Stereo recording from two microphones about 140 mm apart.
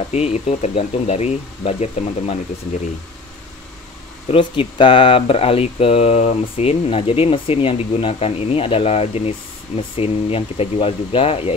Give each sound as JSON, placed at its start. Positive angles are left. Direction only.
{"t": 0.1, "sound": "speech", "side_deg": 50}
{"t": 4.3, "sound": "speech", "side_deg": 35}